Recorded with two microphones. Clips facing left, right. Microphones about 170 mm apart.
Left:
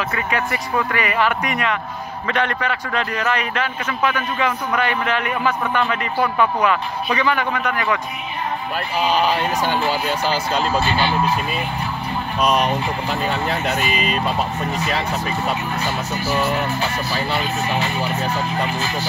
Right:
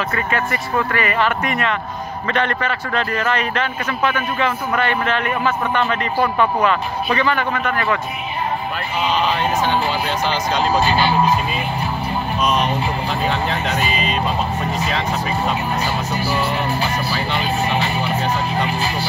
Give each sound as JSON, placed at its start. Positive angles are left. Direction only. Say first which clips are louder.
{"t": 0.1, "sound": "speech", "louder": "right 1 dB", "side_deg": 10}
{"t": 9.1, "sound": "speech", "louder": "right 1 dB", "side_deg": 10}
{"t": 10.6, "sound": "speech", "louder": "right 6 dB", "side_deg": -40}
{"t": 12.4, "sound": "speech", "louder": "left 2 dB", "side_deg": 10}
{"t": 16.3, "sound": "music", "louder": "left 3 dB", "side_deg": -10}